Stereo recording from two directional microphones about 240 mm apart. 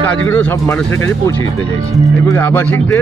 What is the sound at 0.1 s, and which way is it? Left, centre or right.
Speech, centre.